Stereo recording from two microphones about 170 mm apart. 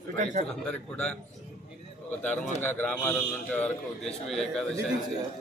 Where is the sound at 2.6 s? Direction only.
10° left (ahead or behind).